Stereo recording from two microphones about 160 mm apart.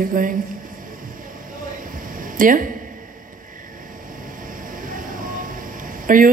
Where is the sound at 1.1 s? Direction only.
60° right (ahead or behind).